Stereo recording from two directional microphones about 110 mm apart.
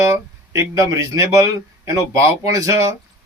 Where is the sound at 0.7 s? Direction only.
25° right (ahead or behind).